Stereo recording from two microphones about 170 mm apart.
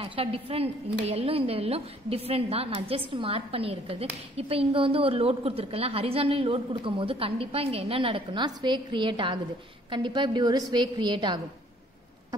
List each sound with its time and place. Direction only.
0.0 s a woman's voice: 35° right (ahead or behind)